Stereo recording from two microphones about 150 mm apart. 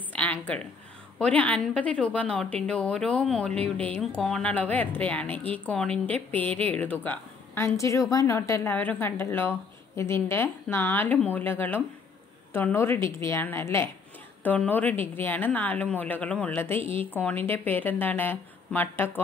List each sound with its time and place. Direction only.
0.1 s a woman's voice: 10° left (ahead or behind)